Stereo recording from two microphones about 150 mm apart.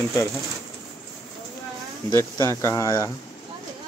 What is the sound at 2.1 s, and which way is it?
Speech, 15° left (ahead or behind).